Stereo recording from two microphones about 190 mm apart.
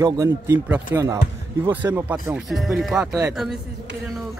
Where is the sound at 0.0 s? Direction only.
15° right (ahead or behind); by 3.2 s centre (ahead or behind).